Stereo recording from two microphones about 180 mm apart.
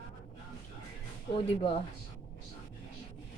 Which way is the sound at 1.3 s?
30° left (ahead or behind).